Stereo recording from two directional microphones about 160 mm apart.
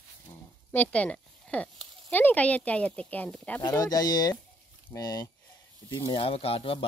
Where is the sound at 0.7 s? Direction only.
10° left (ahead or behind).